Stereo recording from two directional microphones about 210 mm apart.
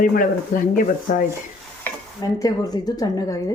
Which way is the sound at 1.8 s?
15° left (ahead or behind).